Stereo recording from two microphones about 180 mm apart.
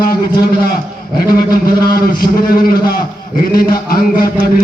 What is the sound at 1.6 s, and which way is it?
A man's voice, 55° left (ahead or behind).